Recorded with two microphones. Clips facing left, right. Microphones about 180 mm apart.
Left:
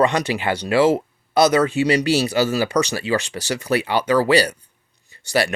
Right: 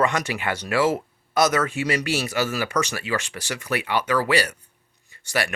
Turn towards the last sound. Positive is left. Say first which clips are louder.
# left 6 dB
turn(degrees=35)  # may be behind; listen again after turning